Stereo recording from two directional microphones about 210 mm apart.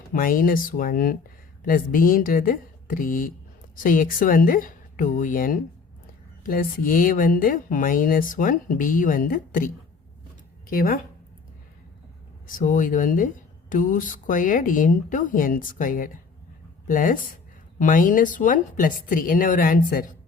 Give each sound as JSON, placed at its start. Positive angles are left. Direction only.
{"t": 0.1, "sound": "speech", "side_deg": 40}
{"t": 10.7, "sound": "speech", "side_deg": 40}
{"t": 12.5, "sound": "speech", "side_deg": 40}